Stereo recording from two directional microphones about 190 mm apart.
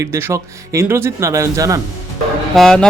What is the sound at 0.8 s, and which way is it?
Speech, 15° right (ahead or behind).